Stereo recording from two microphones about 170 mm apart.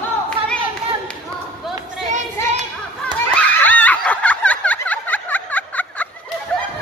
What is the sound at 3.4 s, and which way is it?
Snicker, 10° left (ahead or behind).